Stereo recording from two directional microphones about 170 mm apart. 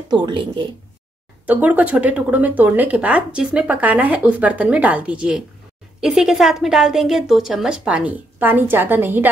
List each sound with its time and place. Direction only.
0.1 s speech: 30° right (ahead or behind)
1.4 s a woman's voice: 10° right (ahead or behind)